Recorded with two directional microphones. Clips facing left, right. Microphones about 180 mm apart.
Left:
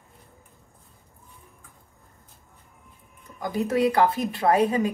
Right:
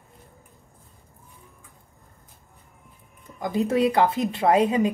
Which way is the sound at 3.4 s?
20° right (ahead or behind).